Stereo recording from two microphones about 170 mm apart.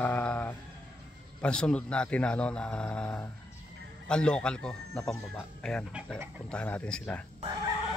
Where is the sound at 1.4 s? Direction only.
5° left (ahead or behind).